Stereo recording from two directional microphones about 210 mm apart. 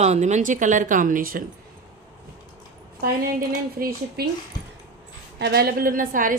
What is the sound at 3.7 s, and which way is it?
Speech, 45° right (ahead or behind).